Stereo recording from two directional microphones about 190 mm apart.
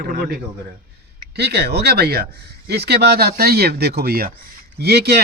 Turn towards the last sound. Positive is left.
turn(degrees=-60)  # may be behind; listen again after turning